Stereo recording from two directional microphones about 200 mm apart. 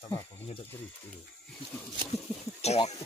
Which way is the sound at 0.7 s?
10° left (ahead or behind).